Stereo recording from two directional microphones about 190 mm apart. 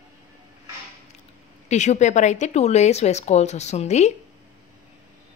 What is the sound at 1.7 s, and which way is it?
Speech, 35° left (ahead or behind).